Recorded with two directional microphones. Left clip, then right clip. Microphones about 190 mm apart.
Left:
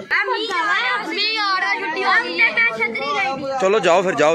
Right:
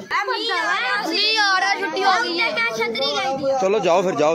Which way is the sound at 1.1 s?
35° right (ahead or behind).